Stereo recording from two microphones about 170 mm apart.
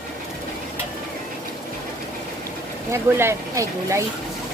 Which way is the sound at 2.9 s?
15° right (ahead or behind).